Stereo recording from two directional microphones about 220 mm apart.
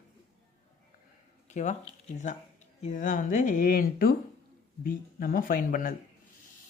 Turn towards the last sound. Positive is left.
turn(degrees=40)  # may be behind; listen again after turning